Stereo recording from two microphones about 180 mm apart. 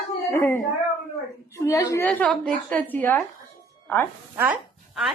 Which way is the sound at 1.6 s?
15° left (ahead or behind).